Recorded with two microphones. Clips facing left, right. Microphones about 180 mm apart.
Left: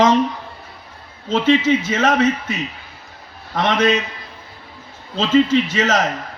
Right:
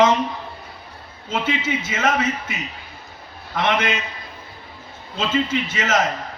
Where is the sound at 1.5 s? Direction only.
35° left (ahead or behind).